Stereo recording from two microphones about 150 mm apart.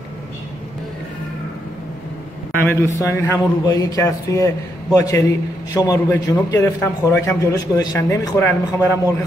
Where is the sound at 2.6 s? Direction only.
20° left (ahead or behind).